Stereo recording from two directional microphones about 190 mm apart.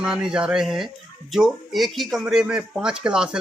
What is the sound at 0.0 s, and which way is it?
Speech, 5° right (ahead or behind).